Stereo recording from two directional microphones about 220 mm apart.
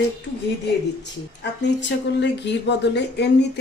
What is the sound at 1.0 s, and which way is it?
Speech, 50° left (ahead or behind).